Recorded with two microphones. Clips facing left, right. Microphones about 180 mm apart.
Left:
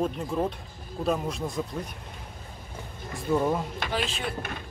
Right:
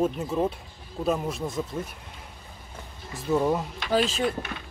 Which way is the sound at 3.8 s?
40° right (ahead or behind).